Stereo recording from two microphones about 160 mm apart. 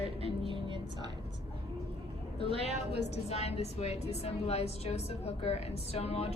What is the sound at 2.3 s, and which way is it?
Speech, 35° right (ahead or behind).